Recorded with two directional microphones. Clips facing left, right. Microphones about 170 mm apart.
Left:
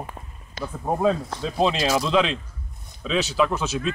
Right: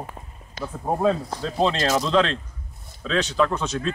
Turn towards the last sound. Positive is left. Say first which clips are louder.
# even
turn(degrees=5)  # may be behind; listen again after turning